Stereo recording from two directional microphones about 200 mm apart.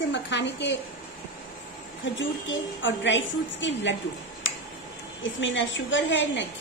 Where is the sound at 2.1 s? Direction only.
65° left (ahead or behind).